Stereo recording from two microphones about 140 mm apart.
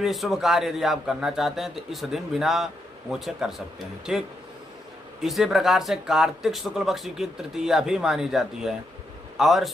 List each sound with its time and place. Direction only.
0.0 s a man's voice: centre (ahead or behind)
5.2 s a man's voice: centre (ahead or behind)